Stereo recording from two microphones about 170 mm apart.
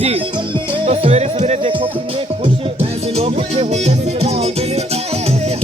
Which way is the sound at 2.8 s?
35° right (ahead or behind).